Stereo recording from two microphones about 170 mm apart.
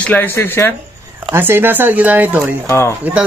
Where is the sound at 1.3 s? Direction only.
15° right (ahead or behind).